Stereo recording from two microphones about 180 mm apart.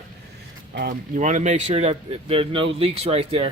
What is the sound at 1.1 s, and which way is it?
Speech, 45° right (ahead or behind).